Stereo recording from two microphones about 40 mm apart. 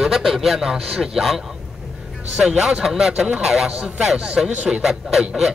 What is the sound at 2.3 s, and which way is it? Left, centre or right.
A man's voice, centre.